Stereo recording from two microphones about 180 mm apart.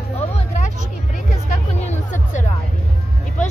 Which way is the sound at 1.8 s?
45° left (ahead or behind).